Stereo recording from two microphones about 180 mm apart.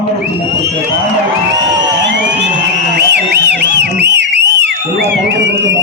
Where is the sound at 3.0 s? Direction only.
70° right (ahead or behind).